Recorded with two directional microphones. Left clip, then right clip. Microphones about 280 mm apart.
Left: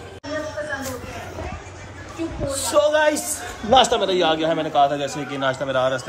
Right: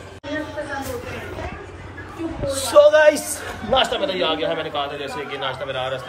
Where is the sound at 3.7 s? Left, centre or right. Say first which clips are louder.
Left 3 dB; left.